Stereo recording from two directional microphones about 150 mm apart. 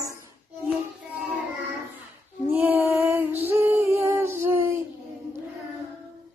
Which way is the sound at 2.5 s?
15° right (ahead or behind).